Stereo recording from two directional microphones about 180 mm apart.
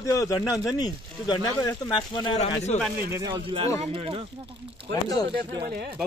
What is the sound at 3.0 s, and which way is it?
A woman's voice, 15° right (ahead or behind).